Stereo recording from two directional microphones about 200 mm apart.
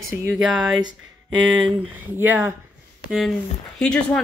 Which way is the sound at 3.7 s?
5° left (ahead or behind).